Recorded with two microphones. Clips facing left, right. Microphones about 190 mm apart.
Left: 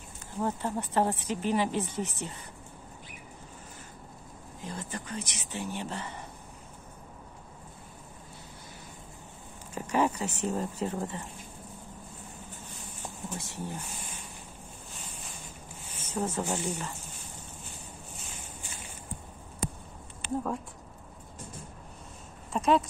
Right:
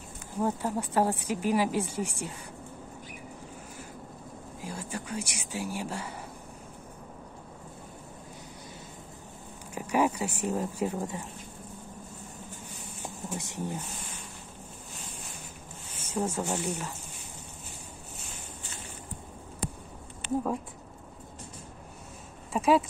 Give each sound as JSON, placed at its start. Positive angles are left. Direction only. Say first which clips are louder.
{"t": 0.4, "sound": "speech", "louder": "right 2 dB", "side_deg": -10}
{"t": 4.6, "sound": "speech", "louder": "right 1 dB", "side_deg": -10}
{"t": 9.8, "sound": "speech", "louder": "right 1 dB", "side_deg": -10}
{"t": 13.3, "sound": "speech", "louder": "right 4 dB", "side_deg": -15}
{"t": 16.0, "sound": "speech", "louder": "right 1 dB", "side_deg": -10}
{"t": 22.5, "sound": "speech", "louder": "right 1 dB", "side_deg": -5}